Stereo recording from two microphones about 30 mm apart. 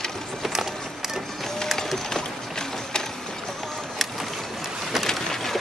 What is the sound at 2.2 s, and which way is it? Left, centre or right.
Run, left.